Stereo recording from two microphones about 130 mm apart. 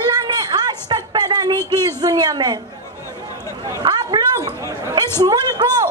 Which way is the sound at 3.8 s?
35° right (ahead or behind).